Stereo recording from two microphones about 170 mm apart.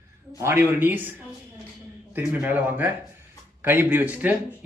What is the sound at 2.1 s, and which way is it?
Speech, 10° right (ahead or behind).